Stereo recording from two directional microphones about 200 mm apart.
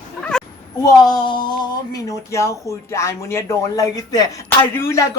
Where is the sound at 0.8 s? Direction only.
20° left (ahead or behind).